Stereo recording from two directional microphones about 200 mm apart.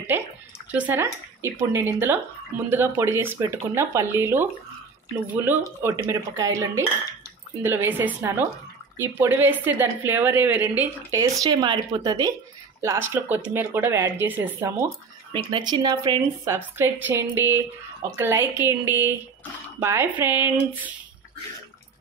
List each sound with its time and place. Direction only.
0.7 s a woman's voice: 10° right (ahead or behind)
15.3 s a woman's voice: 20° right (ahead or behind)